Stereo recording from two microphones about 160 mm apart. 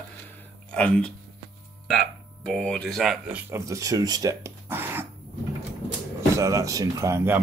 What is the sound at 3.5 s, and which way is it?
Speech, 20° right (ahead or behind).